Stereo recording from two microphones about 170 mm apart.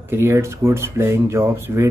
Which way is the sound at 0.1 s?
15° right (ahead or behind).